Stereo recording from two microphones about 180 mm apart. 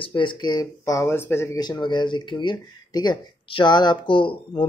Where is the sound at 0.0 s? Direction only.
25° left (ahead or behind).